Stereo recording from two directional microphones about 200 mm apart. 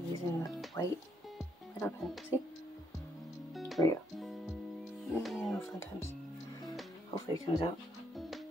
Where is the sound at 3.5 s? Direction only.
Centre (ahead or behind).